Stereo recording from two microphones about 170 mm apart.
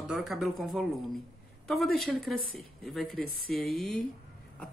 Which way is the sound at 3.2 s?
60° left (ahead or behind).